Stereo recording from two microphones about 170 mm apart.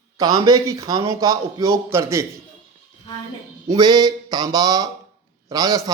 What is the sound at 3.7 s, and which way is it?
Speech, 25° right (ahead or behind).